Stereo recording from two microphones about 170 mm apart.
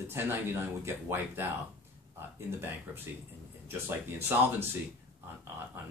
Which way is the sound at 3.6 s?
15° right (ahead or behind).